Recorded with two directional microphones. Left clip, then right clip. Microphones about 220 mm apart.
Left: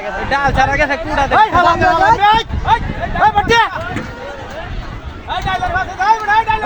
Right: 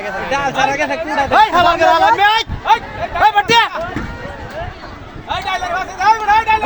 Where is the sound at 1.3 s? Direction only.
50° right (ahead or behind).